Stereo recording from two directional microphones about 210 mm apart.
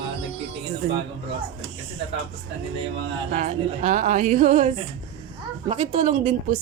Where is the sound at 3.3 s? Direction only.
35° right (ahead or behind).